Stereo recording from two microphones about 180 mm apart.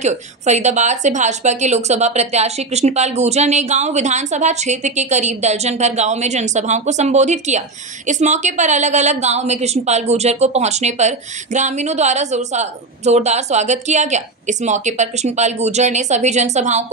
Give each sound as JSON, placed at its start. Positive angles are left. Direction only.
{"t": 0.0, "sound": "a woman's voice", "side_deg": -40}